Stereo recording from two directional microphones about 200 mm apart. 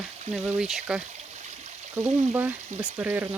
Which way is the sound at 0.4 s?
5° right (ahead or behind).